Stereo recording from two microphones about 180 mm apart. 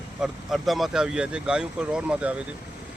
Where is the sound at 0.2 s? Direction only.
Centre (ahead or behind).